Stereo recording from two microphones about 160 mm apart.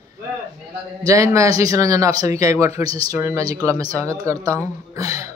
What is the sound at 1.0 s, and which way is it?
Speech, 20° right (ahead or behind).